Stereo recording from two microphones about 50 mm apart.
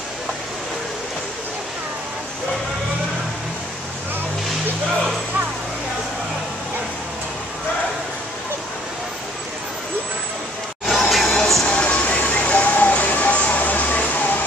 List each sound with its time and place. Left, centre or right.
10.9 s music: centre
11.6 s vehicle: left